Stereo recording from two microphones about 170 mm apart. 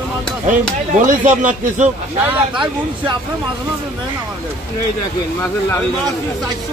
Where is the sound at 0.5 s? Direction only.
50° right (ahead or behind).